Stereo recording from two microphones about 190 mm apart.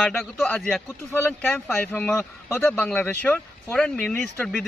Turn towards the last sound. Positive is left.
turn(degrees=5)  # may be behind; listen again after turning